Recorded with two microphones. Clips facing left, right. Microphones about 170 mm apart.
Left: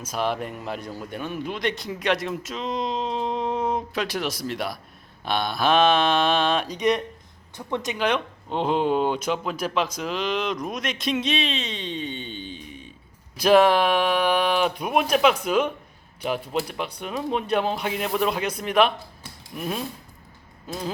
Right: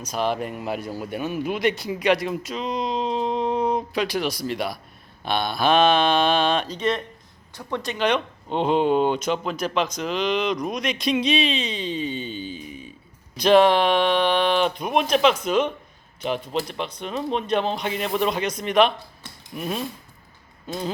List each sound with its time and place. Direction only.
0.0 s speech: centre (ahead or behind)
6.7 s speech: 15° left (ahead or behind)
7.9 s speech: 5° left (ahead or behind)
13.3 s speech: 5° left (ahead or behind)